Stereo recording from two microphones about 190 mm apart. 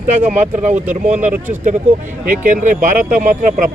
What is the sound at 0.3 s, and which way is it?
Speech, 40° right (ahead or behind).